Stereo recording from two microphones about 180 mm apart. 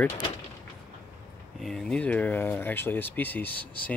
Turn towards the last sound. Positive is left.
turn(degrees=10)  # may be behind; listen again after turning